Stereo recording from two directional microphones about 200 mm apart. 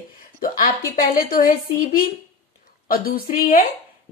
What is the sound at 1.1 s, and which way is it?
Speech, 45° left (ahead or behind).